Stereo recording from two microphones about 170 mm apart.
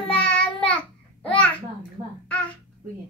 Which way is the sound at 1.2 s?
10° left (ahead or behind).